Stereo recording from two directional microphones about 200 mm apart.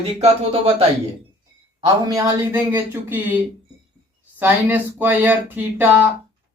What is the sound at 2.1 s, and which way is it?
Speech, 10° right (ahead or behind).